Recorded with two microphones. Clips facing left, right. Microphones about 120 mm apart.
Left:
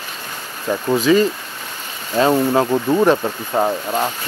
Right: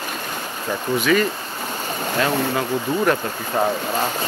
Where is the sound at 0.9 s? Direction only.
30° left (ahead or behind).